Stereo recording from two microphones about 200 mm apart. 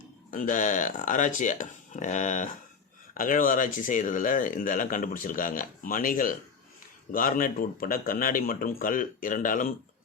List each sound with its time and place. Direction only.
0.3 s speech: 40° left (ahead or behind)